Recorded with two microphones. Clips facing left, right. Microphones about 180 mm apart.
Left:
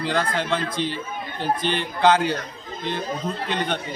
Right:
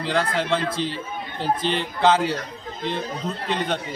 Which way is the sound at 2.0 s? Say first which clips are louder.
Left 1 dB; centre (ahead or behind).